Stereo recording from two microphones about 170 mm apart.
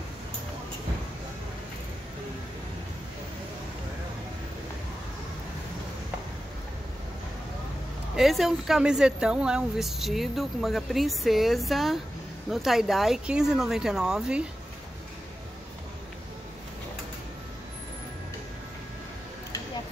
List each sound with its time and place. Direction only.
8.2 s speech: centre (ahead or behind)